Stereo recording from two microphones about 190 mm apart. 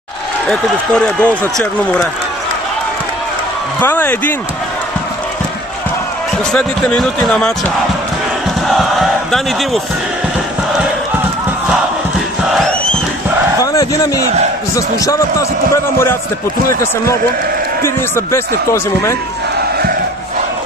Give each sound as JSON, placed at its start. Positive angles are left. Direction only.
{"t": 0.5, "sound": "speech", "side_deg": 5}
{"t": 3.8, "sound": "speech", "side_deg": 10}
{"t": 6.5, "sound": "speech", "side_deg": 5}
{"t": 8.6, "sound": "battle cry", "side_deg": 0}
{"t": 12.4, "sound": "crowd", "side_deg": 5}
{"t": 13.6, "sound": "a sound", "side_deg": 20}
{"t": 14.8, "sound": "speech", "side_deg": 15}